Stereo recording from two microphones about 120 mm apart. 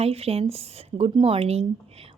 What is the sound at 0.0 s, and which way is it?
A woman's voice, 60° right (ahead or behind).